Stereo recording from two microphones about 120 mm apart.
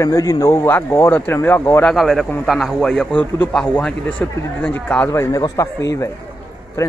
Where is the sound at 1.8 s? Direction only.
5° left (ahead or behind).